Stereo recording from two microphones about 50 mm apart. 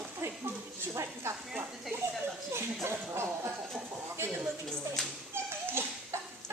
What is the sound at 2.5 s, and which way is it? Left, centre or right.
Speech, right.